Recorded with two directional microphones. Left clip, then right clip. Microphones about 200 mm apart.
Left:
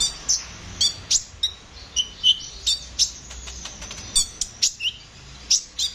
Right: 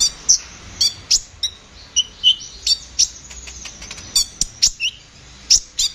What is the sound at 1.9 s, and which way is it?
Chirp, 15° right (ahead or behind).